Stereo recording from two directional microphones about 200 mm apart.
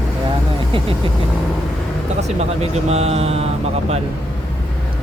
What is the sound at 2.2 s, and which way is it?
Speech, 30° right (ahead or behind).